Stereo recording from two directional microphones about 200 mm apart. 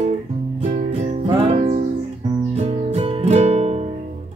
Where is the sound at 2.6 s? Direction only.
30° right (ahead or behind).